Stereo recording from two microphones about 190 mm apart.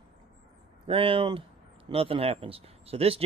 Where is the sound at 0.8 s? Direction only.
30° right (ahead or behind).